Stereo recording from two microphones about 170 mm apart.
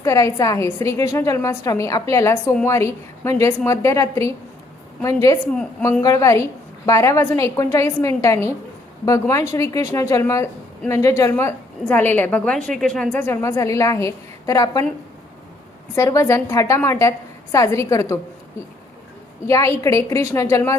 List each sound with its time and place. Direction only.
0.0 s a woman's voice: 20° left (ahead or behind)
16.0 s a woman's voice: 15° left (ahead or behind)
19.5 s a woman's voice: 20° left (ahead or behind)